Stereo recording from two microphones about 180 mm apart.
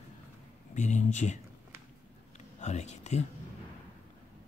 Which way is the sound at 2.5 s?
40° left (ahead or behind).